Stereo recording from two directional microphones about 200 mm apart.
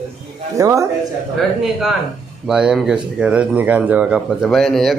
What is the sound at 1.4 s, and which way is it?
Speech, centre (ahead or behind).